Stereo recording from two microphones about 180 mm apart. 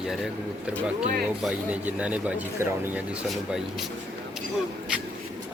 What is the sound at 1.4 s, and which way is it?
Speech, 5° right (ahead or behind).